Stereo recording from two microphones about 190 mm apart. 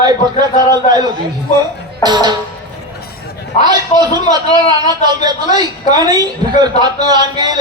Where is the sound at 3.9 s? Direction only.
40° left (ahead or behind).